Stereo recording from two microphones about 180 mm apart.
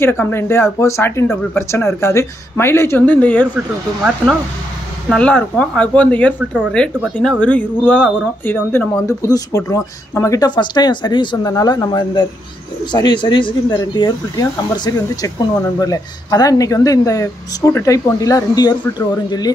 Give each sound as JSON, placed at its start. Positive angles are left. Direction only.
{"t": 0.0, "sound": "speech", "side_deg": 15}
{"t": 3.5, "sound": "speech", "side_deg": -5}
{"t": 5.1, "sound": "speech", "side_deg": 5}